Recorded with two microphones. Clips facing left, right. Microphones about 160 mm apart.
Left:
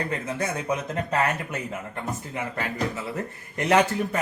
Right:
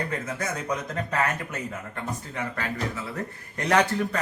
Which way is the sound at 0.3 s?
30° left (ahead or behind).